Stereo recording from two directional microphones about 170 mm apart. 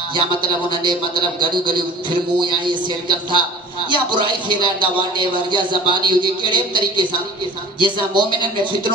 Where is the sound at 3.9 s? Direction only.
30° right (ahead or behind).